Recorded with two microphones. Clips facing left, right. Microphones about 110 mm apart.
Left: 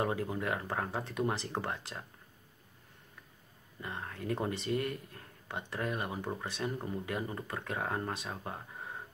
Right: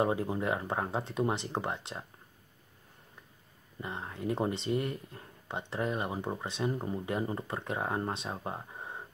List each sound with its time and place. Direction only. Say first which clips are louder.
0.0 s speech: right 4 dB; 25° right (ahead or behind)
3.8 s speech: right 3 dB; 20° right (ahead or behind)